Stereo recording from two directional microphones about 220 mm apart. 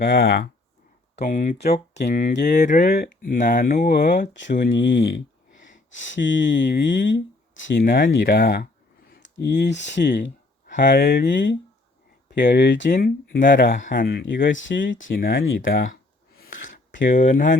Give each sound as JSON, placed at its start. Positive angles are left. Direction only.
{"t": 0.0, "sound": "speech", "side_deg": 40}
{"t": 4.5, "sound": "speech", "side_deg": 50}
{"t": 10.7, "sound": "speech", "side_deg": 40}
{"t": 14.5, "sound": "speech", "side_deg": 60}
{"t": 15.2, "sound": "speech", "side_deg": 40}
{"t": 15.4, "sound": "speech", "side_deg": 60}
{"t": 15.7, "sound": "speech", "side_deg": 40}